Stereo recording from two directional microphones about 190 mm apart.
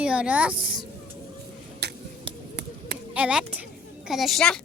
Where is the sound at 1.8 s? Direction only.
60° right (ahead or behind).